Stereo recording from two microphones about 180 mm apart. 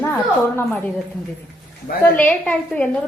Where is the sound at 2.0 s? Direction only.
10° left (ahead or behind).